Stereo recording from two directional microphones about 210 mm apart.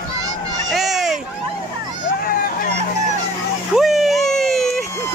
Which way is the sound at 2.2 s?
45° left (ahead or behind).